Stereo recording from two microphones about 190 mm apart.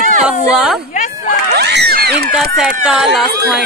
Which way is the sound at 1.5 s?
60° right (ahead or behind).